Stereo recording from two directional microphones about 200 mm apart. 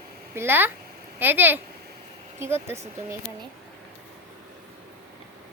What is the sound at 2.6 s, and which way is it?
Speech, 15° right (ahead or behind).